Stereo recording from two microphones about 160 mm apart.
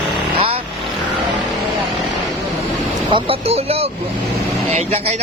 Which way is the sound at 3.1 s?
35° right (ahead or behind).